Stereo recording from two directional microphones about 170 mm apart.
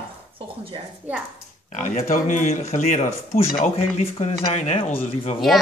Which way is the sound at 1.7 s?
50° left (ahead or behind).